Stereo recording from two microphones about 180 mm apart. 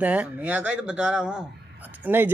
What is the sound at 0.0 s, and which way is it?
Speech, 10° right (ahead or behind).